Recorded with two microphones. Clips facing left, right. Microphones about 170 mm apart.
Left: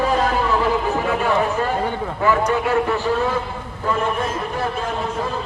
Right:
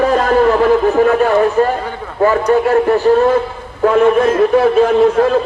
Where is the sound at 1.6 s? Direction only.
45° right (ahead or behind).